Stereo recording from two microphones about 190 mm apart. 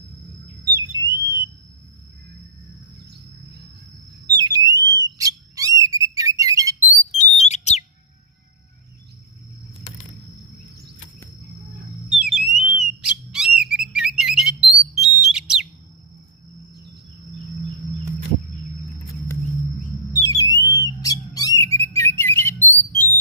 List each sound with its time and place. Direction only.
0.6 s whistle: 15° right (ahead or behind)
4.4 s alarm: 20° right (ahead or behind)
5.1 s bird: 20° right (ahead or behind)
7.1 s a sound: 35° left (ahead or behind)
12.1 s alarm: 5° right (ahead or behind)
13.3 s bird: 5° right (ahead or behind)
15.0 s a sound: 5° right (ahead or behind)
20.1 s alarm: 20° left (ahead or behind)
20.8 s bird: 20° left (ahead or behind)
21.7 s a sound: 10° left (ahead or behind)